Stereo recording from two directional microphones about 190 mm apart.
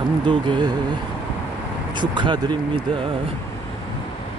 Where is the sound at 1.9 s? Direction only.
25° right (ahead or behind).